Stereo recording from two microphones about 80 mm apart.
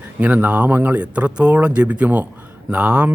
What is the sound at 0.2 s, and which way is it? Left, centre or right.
Speech, centre.